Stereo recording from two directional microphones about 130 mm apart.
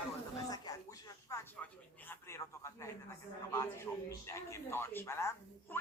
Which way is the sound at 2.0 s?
20° left (ahead or behind).